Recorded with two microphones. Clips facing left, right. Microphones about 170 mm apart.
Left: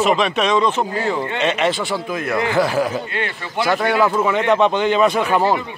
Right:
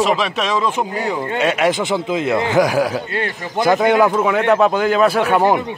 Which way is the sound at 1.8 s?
20° right (ahead or behind).